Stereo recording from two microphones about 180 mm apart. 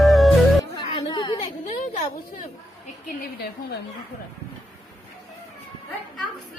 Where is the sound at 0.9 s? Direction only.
25° left (ahead or behind).